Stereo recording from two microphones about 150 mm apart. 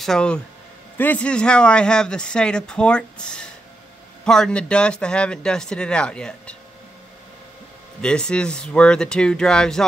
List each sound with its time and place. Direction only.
0.0 s speech: 5° left (ahead or behind)
8.0 s speech: 5° left (ahead or behind)